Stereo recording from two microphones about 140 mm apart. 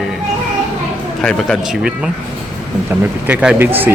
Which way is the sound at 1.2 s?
5° left (ahead or behind).